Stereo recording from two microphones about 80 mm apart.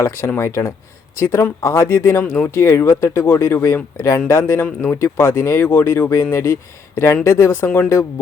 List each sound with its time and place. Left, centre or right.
0.0 s speech: left